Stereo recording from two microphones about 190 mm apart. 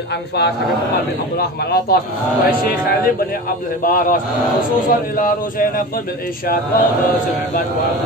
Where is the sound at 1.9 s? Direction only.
55° left (ahead or behind).